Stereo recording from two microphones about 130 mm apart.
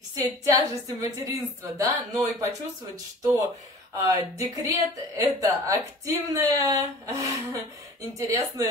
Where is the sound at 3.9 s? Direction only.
25° right (ahead or behind).